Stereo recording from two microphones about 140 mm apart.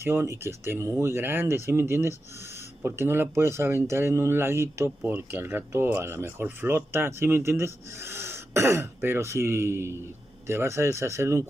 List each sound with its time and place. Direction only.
0.0 s speech: 20° right (ahead or behind)